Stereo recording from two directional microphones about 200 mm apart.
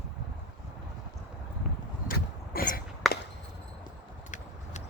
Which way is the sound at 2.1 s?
45° left (ahead or behind).